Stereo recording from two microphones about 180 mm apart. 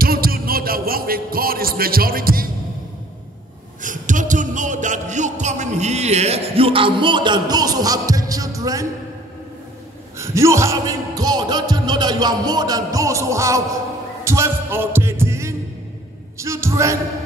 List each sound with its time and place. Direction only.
0.0 s music: 55° right (ahead or behind)
3.8 s music: 45° right (ahead or behind); by 8.8 s 20° right (ahead or behind)
10.1 s speech: 15° right (ahead or behind)
14.2 s heart sounds: 15° right (ahead or behind)
16.3 s a woman's voice: 15° right (ahead or behind)